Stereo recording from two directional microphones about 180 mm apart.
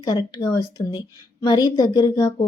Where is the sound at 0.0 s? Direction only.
25° left (ahead or behind).